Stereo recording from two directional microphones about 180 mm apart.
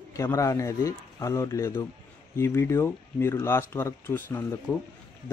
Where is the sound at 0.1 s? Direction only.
15° left (ahead or behind).